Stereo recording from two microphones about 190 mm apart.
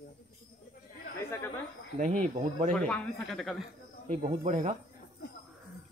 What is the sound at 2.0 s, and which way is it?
Speech, 40° right (ahead or behind).